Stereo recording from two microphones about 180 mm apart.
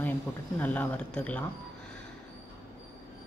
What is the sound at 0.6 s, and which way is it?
Speech, 10° left (ahead or behind).